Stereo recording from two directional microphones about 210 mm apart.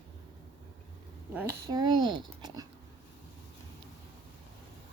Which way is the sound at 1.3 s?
10° right (ahead or behind).